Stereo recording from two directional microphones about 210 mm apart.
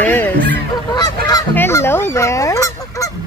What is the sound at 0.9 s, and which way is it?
Goose, 20° left (ahead or behind).